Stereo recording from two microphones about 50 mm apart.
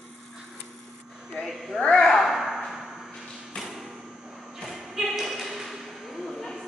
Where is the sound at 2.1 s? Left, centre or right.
Centre.